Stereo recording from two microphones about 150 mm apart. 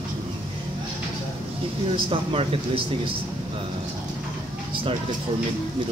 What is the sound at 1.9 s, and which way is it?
Speech, 40° right (ahead or behind).